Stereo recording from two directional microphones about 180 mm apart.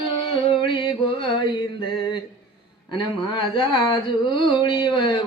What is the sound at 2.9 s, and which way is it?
Speech, 25° left (ahead or behind).